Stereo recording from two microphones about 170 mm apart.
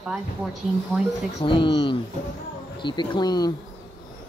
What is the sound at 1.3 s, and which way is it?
Speech, 30° left (ahead or behind).